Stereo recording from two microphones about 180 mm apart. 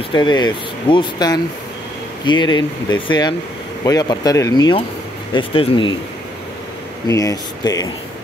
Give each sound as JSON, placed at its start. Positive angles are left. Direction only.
{"t": 0.1, "sound": "speech", "side_deg": 25}
{"t": 7.1, "sound": "speech", "side_deg": 20}